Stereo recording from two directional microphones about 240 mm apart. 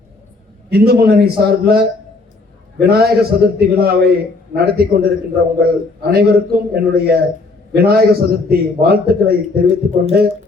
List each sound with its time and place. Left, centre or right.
0.7 s a man's voice: right